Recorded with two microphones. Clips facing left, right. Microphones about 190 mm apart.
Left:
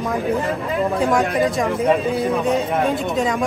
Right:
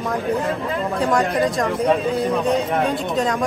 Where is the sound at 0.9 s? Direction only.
Centre (ahead or behind).